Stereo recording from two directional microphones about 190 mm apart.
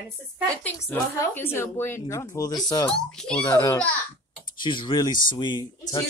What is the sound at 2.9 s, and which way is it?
Speech, 5° left (ahead or behind).